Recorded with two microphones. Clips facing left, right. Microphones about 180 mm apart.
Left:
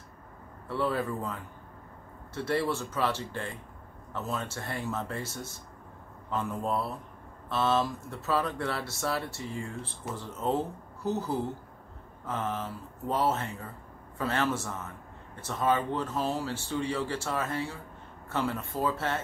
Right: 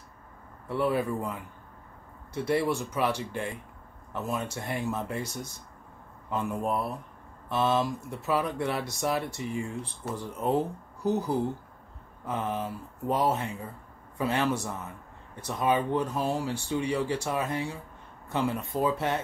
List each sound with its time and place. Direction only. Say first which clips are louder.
0.7 s speech: right 3 dB; 15° right (ahead or behind)